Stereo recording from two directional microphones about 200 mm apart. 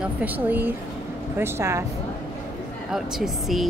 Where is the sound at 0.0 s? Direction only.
10° right (ahead or behind).